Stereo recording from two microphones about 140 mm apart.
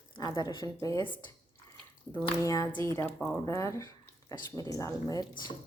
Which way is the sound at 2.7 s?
20° left (ahead or behind).